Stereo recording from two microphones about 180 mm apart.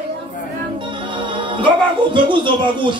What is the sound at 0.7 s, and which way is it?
Music, 25° right (ahead or behind).